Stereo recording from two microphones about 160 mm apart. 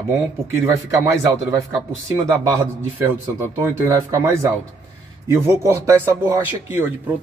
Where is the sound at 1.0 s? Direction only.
20° right (ahead or behind).